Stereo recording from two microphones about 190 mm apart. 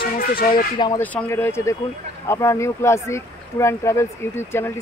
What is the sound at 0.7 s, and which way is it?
Speech, 25° left (ahead or behind).